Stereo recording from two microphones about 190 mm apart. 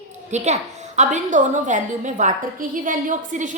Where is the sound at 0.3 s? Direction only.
35° right (ahead or behind).